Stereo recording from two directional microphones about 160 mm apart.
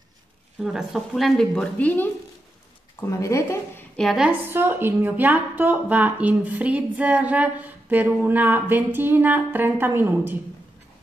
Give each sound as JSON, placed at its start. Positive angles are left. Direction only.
{"t": 0.6, "sound": "a woman's voice", "side_deg": -5}
{"t": 3.9, "sound": "a woman's voice", "side_deg": 0}
{"t": 4.3, "sound": "a woman's voice", "side_deg": -15}